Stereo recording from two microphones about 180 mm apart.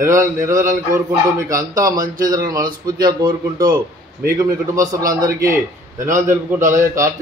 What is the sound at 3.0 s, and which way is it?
Speech, 25° right (ahead or behind).